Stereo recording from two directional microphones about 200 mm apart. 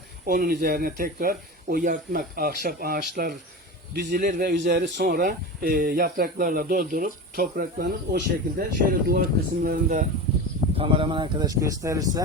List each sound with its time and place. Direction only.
0.3 s speech: 45° right (ahead or behind)
9.6 s speech: 40° right (ahead or behind)
10.8 s speech: 25° right (ahead or behind)